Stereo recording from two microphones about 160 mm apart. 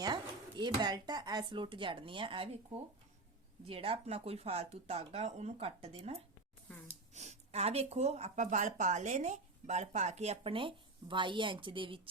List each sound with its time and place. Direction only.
0.0 s speech: 25° right (ahead or behind)
3.7 s speech: 35° right (ahead or behind)